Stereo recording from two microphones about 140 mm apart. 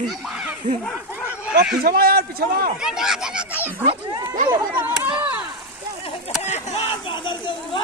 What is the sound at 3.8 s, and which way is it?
Speech, 35° right (ahead or behind).